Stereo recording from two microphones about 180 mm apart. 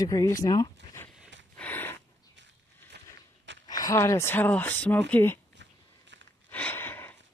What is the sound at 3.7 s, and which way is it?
Speech, 20° left (ahead or behind).